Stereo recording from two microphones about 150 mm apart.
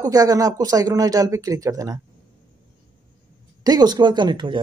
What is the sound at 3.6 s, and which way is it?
Speech, 25° right (ahead or behind).